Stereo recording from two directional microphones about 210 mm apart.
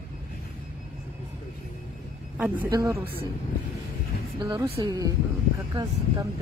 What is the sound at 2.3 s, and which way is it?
Speech, 10° right (ahead or behind).